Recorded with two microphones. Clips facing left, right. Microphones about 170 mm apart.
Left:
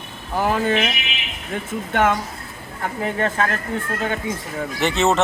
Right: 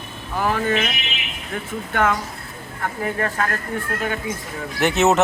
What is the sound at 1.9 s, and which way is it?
Speech, 25° left (ahead or behind).